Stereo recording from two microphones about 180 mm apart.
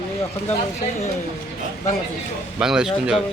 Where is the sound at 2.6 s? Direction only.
5° right (ahead or behind).